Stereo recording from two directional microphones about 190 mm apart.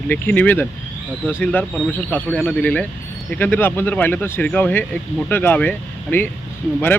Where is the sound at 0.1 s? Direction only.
10° left (ahead or behind).